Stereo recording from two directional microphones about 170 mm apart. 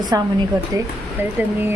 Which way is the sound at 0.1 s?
20° right (ahead or behind).